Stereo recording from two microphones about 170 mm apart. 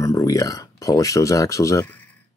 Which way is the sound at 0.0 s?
20° left (ahead or behind).